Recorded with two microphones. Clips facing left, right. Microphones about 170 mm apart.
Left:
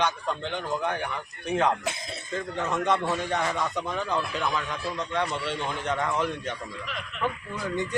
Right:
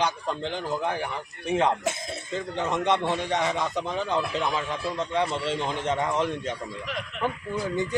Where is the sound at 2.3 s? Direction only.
25° right (ahead or behind).